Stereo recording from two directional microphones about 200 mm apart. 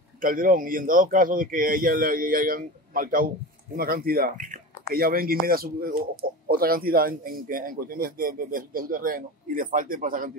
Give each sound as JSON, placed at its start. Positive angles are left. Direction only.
{"t": 0.2, "sound": "speech", "side_deg": -45}